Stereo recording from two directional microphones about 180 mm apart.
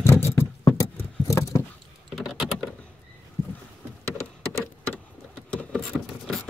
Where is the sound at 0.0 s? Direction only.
15° left (ahead or behind).